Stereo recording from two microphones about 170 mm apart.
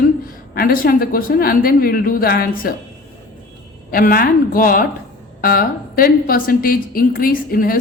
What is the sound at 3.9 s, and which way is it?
A woman's voice, 55° left (ahead or behind).